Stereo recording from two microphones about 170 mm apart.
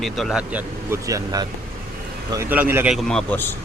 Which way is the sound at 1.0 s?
20° right (ahead or behind).